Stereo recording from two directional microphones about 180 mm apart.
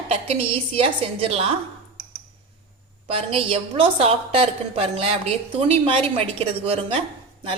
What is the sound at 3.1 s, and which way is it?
A woman's voice, 30° right (ahead or behind).